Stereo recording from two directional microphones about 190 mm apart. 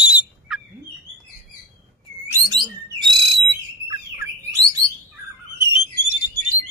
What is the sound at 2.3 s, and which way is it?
Bird, 25° right (ahead or behind).